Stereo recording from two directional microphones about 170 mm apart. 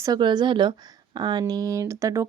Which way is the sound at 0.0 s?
25° right (ahead or behind).